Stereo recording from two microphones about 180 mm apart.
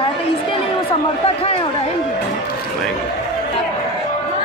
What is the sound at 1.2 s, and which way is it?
Speech, 35° left (ahead or behind).